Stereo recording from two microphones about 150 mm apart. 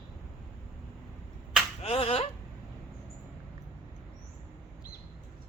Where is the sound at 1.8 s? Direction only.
40° left (ahead or behind).